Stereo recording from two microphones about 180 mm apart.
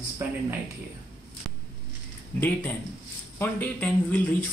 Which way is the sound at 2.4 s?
10° left (ahead or behind).